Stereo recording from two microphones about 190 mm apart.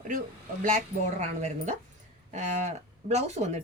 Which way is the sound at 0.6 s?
40° right (ahead or behind).